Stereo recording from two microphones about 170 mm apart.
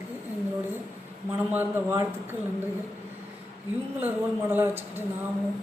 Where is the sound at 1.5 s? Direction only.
15° right (ahead or behind).